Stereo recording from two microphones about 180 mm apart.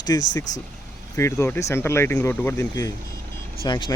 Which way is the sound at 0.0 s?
20° left (ahead or behind).